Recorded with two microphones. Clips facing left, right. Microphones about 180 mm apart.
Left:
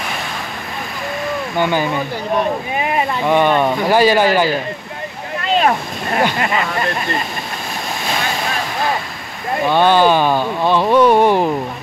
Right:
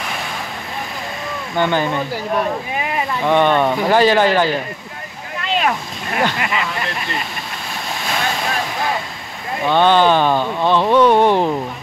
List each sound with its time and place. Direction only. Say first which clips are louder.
1.6 s speech: even; 10° left (ahead or behind)
3.3 s speech: even; 10° left (ahead or behind)
5.5 s speech: left 4 dB; 40° left (ahead or behind)
9.7 s speech: even; 10° left (ahead or behind)